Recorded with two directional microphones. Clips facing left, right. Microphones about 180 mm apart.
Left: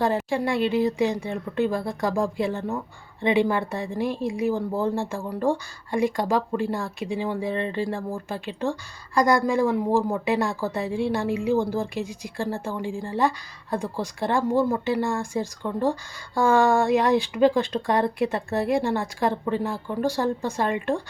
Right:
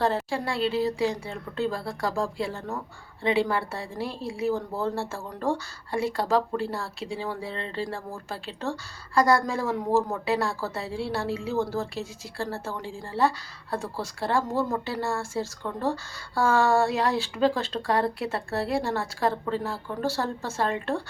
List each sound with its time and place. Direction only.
0.0 s speech: 15° left (ahead or behind)